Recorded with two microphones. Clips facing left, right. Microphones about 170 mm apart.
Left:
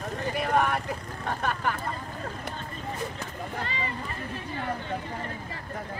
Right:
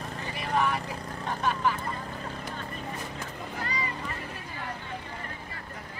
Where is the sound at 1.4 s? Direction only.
60° left (ahead or behind).